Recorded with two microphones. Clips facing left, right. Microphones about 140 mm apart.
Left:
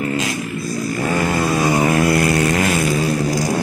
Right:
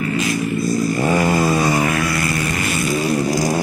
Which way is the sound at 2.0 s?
60° left (ahead or behind).